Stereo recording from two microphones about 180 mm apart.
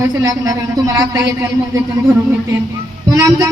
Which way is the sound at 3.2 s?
20° right (ahead or behind).